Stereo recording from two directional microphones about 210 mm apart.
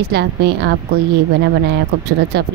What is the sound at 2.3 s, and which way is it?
Speech, 50° right (ahead or behind).